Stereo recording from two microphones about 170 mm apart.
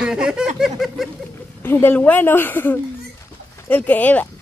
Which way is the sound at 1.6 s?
10° left (ahead or behind).